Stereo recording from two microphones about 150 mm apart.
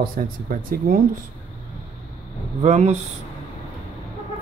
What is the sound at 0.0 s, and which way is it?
Speech, 70° right (ahead or behind).